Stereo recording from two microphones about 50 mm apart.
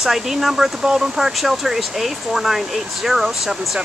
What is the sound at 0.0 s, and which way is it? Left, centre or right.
Speech, centre.